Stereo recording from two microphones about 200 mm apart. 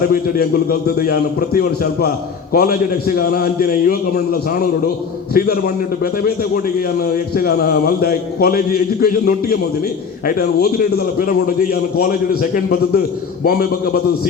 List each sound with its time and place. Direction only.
0.1 s a man's voice: 50° left (ahead or behind)